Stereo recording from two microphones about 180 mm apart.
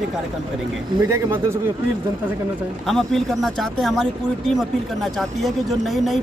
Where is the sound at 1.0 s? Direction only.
15° right (ahead or behind).